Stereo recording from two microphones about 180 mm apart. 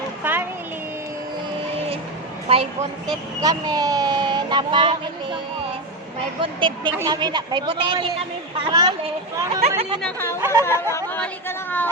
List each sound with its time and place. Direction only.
0.2 s a sound: 10° right (ahead or behind)
2.5 s a woman's voice: 30° right (ahead or behind)
3.4 s speech: 20° right (ahead or behind)
9.6 s a woman's voice: 35° right (ahead or behind)
10.0 s speech: 10° left (ahead or behind)
10.4 s speech: 15° right (ahead or behind)
10.7 s speech: 15° left (ahead or behind)